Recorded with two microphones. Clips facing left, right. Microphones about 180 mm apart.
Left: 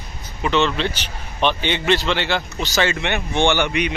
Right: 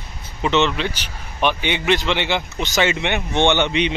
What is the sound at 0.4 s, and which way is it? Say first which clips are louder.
A man's voice: right 1 dB; 20° right (ahead or behind).